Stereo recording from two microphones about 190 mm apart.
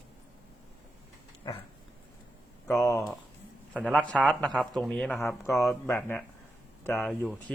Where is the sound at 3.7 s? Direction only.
5° left (ahead or behind).